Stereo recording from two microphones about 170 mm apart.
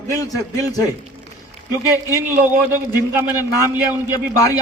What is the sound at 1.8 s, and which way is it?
Speech, 15° right (ahead or behind).